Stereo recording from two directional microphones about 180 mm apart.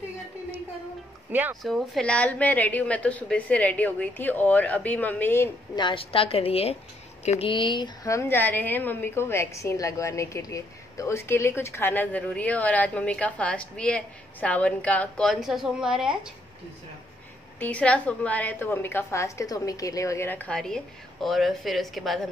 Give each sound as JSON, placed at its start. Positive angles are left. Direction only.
{"t": 1.3, "sound": "speech", "side_deg": -10}
{"t": 1.6, "sound": "a woman's voice", "side_deg": 0}
{"t": 5.8, "sound": "a woman's voice", "side_deg": 30}
{"t": 17.6, "sound": "a woman's voice", "side_deg": 5}